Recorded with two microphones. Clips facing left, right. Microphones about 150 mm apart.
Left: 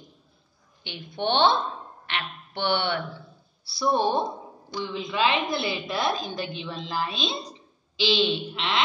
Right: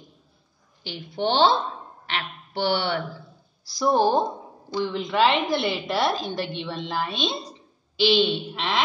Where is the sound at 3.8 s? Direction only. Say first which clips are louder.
Right 3 dB; 75° right (ahead or behind).